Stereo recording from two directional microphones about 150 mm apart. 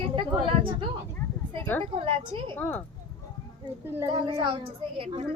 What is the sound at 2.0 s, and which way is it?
Speech, 35° right (ahead or behind).